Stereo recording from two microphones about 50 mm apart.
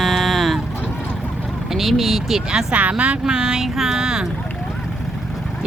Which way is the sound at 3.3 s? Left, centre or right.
Centre.